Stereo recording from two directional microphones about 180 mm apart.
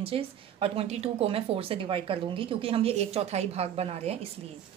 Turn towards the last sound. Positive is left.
turn(degrees=-35)  # may be behind; listen again after turning